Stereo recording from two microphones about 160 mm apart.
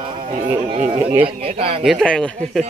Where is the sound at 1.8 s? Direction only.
Centre (ahead or behind).